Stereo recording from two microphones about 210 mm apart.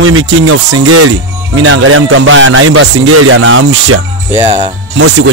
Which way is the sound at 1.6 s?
70° right (ahead or behind).